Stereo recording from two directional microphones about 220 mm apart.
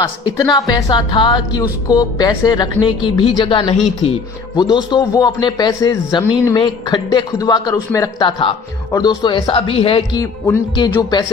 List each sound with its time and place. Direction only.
0.5 s a man's voice: 20° left (ahead or behind)